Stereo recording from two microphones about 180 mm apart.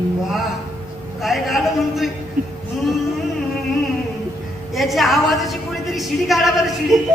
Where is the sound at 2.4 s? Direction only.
50° right (ahead or behind).